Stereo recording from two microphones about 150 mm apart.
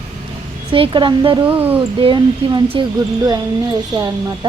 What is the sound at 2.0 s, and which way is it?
Speech, 35° right (ahead or behind).